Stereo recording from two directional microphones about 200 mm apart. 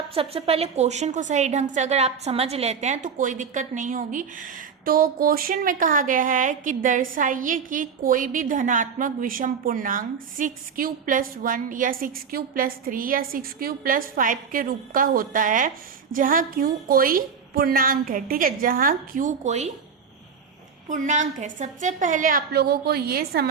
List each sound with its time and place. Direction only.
0.1 s a woman's voice: 30° right (ahead or behind)
20.8 s a woman's voice: 40° right (ahead or behind)